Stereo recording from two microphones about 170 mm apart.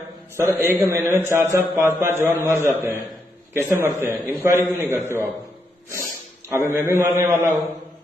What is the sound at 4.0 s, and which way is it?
A man's voice, 10° right (ahead or behind).